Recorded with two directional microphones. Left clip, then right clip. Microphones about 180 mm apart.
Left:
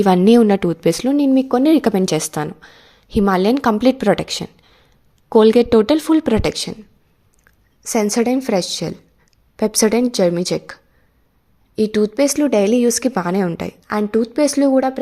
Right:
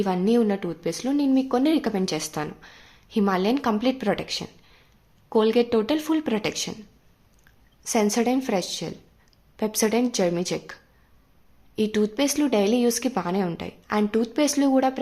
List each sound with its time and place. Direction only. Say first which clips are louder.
0.0 s a woman's voice: left 10 dB; 50° left (ahead or behind); by 15.0 s 25° left (ahead or behind)